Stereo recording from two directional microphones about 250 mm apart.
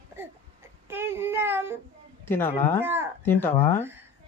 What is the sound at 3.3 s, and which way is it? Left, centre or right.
Speech, centre.